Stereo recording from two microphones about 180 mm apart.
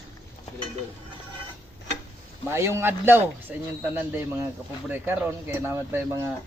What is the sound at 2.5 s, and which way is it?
Speech, 15° right (ahead or behind).